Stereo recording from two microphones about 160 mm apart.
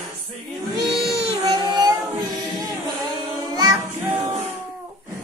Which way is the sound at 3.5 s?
25° right (ahead or behind).